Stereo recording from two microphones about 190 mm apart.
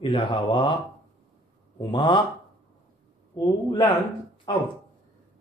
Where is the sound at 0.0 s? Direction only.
25° left (ahead or behind).